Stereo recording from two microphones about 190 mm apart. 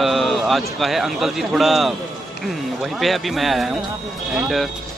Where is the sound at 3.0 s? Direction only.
Centre (ahead or behind).